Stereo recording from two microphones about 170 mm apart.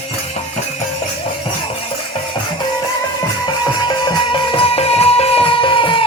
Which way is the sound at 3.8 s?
25° left (ahead or behind).